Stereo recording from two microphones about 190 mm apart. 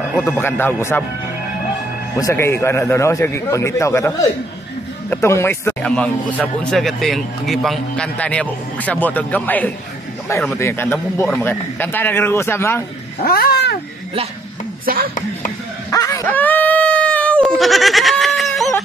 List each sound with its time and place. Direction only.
0.2 s speech: 10° left (ahead or behind)
2.1 s speech: 15° left (ahead or behind)
13.2 s a sound: 55° left (ahead or behind)
15.9 s goat: 15° left (ahead or behind); by 18.7 s centre (ahead or behind)